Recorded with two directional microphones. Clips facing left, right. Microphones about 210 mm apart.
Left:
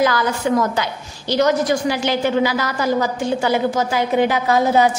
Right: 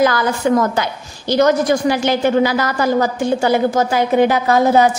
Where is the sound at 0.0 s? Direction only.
50° right (ahead or behind).